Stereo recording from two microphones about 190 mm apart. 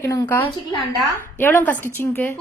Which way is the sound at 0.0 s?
15° left (ahead or behind).